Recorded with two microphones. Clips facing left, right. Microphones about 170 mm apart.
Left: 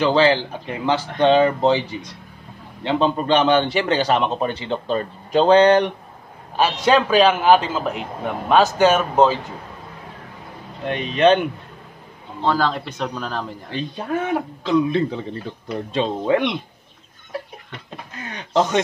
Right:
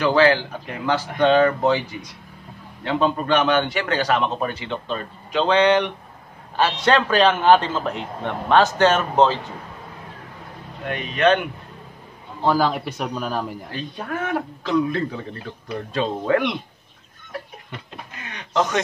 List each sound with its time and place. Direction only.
0.0 s a man's voice: 25° left (ahead or behind); by 5.9 s 40° left (ahead or behind)
6.5 s a man's voice: 10° left (ahead or behind)
10.9 s a man's voice: 30° left (ahead or behind)
12.4 s a man's voice: 10° right (ahead or behind)
13.7 s a man's voice: 25° left (ahead or behind)
18.2 s speech: 35° left (ahead or behind)